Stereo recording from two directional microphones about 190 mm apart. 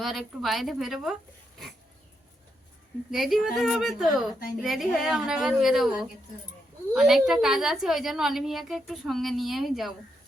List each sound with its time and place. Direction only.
0.0 s a woman's voice: centre (ahead or behind)
3.1 s a woman's voice: centre (ahead or behind)